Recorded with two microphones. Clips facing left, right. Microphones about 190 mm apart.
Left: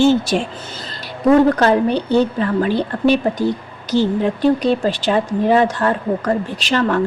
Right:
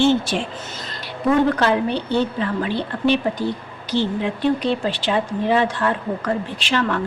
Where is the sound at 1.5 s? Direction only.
40° left (ahead or behind).